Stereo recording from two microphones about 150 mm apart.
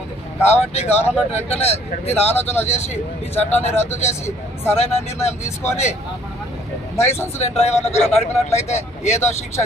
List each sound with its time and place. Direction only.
0.4 s speech: 45° left (ahead or behind)
3.7 s speech: 15° left (ahead or behind)
4.7 s speech: 45° left (ahead or behind)
5.4 s speech: 15° left (ahead or behind)
7.3 s speech: 45° left (ahead or behind)